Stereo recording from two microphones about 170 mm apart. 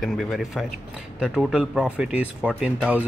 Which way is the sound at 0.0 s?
Centre (ahead or behind).